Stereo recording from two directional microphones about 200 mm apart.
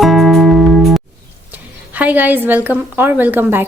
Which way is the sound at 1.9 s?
10° right (ahead or behind).